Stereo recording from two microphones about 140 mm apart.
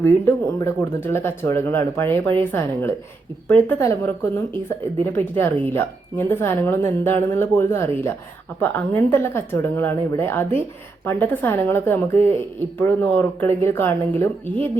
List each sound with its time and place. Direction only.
0.0 s a woman's voice: 20° left (ahead or behind)
5.1 s a woman's voice: 15° left (ahead or behind)